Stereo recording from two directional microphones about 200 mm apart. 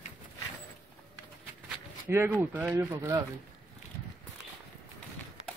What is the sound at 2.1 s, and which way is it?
Speech, 10° right (ahead or behind).